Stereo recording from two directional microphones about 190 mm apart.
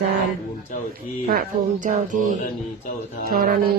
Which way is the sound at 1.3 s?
45° right (ahead or behind).